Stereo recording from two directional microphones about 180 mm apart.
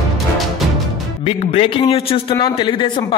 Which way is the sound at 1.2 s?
35° left (ahead or behind).